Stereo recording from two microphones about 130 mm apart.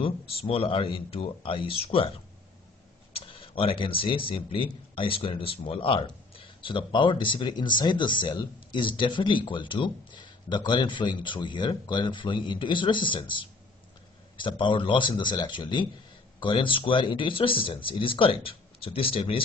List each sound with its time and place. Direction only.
0.5 s speech: 45° left (ahead or behind)
3.1 s speech: 45° left (ahead or behind)